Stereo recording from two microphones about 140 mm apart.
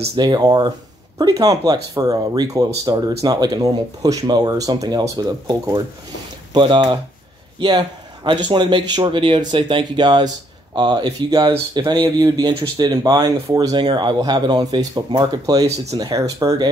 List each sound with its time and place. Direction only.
0.2 s a man's voice: 30° right (ahead or behind)
15.6 s speech: 50° right (ahead or behind)
16.0 s speech: 25° right (ahead or behind)